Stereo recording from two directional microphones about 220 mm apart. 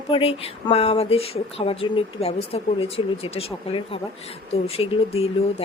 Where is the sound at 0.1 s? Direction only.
25° left (ahead or behind).